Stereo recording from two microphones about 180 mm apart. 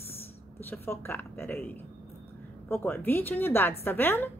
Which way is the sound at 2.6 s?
10° left (ahead or behind).